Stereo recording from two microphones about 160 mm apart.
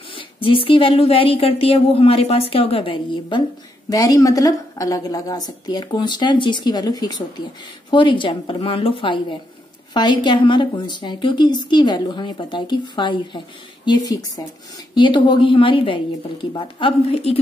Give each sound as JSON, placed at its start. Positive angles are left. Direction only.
{"t": 0.1, "sound": "a woman's voice", "side_deg": 35}